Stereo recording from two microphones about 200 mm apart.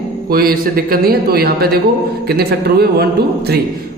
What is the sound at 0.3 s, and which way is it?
A man's voice, 45° right (ahead or behind).